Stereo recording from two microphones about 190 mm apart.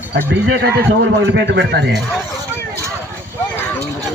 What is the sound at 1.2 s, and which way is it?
Speech, 70° right (ahead or behind).